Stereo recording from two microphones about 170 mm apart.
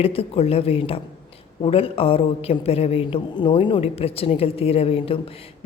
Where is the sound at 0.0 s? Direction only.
35° left (ahead or behind).